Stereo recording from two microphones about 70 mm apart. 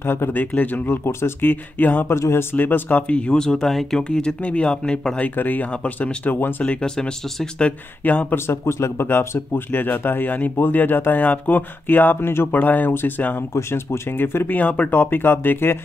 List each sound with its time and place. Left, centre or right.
0.0 s speech: left
2.1 s speech: left
2.5 s speech: left
6.6 s speech: centre
8.0 s speech: left
8.5 s speech: left
9.7 s speech: left
12.5 s speech: left
13.5 s speech: left